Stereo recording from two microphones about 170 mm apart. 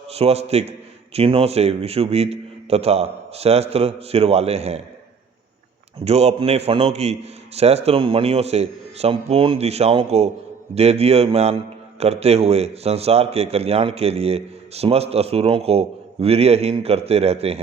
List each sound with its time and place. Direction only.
0.1 s a man's voice: 35° right (ahead or behind)
6.1 s a man's voice: 35° right (ahead or behind)